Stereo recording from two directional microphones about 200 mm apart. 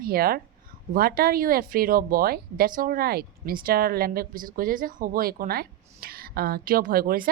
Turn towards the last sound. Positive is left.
turn(degrees=-45)  # may be behind; listen again after turning